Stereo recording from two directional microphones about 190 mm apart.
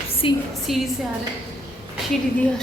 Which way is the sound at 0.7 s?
Centre (ahead or behind).